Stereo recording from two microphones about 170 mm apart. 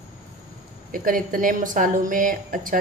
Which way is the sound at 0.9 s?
55° right (ahead or behind).